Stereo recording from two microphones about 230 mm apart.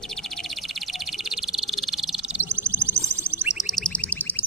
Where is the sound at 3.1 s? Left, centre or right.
Centre.